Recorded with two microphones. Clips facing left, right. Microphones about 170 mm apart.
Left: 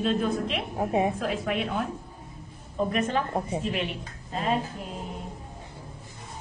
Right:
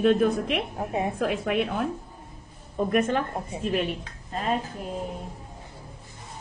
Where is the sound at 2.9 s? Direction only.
50° right (ahead or behind).